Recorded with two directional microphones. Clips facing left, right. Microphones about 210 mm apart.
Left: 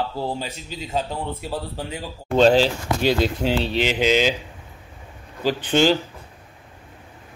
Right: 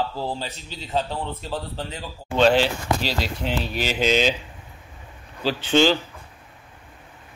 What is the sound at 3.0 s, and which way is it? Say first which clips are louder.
Speech: left 7 dB; 55° left (ahead or behind).